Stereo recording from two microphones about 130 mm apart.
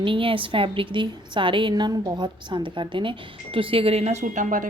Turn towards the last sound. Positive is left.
turn(degrees=-75)  # may be behind; listen again after turning